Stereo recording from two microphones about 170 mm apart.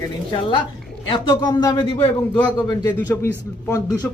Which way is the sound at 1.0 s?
25° left (ahead or behind).